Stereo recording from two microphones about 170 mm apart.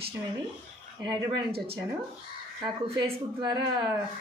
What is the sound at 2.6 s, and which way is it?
Speech, 25° right (ahead or behind).